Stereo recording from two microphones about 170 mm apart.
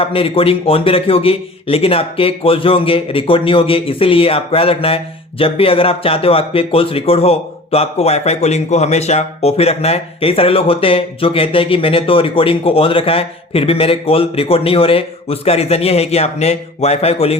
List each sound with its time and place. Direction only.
0.0 s speech: 35° left (ahead or behind)